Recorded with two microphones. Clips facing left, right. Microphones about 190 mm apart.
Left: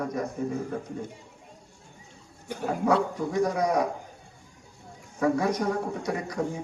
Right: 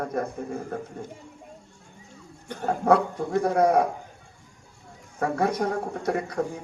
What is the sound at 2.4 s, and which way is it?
Speech, 10° left (ahead or behind).